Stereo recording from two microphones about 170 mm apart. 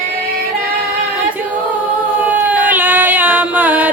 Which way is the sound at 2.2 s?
10° right (ahead or behind).